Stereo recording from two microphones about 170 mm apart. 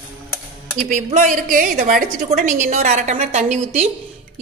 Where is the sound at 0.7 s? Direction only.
50° right (ahead or behind).